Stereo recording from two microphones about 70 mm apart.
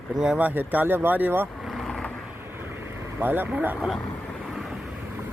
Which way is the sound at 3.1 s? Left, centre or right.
Right.